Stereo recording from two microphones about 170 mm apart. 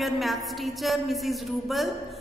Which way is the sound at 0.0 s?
Centre (ahead or behind).